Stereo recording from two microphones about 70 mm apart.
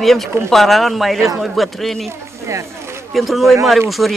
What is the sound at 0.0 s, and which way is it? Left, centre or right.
Speech, centre.